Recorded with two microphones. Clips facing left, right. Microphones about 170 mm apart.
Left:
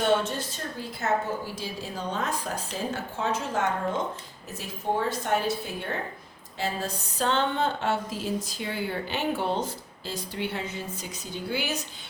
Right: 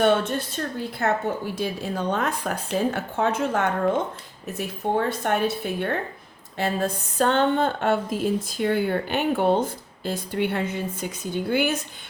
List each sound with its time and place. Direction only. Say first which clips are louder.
0.0 s speech: right 4 dB; 60° right (ahead or behind)